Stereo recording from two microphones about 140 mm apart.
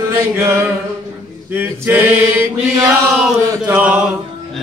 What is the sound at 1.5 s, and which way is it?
Mantra, 15° right (ahead or behind).